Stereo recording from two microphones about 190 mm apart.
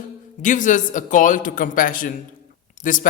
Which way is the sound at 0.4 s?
40° left (ahead or behind).